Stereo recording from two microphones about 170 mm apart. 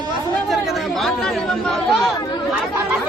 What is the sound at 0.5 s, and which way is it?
Chatter, centre (ahead or behind).